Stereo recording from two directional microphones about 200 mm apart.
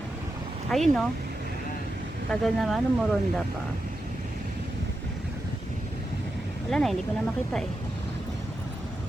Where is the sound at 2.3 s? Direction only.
Centre (ahead or behind).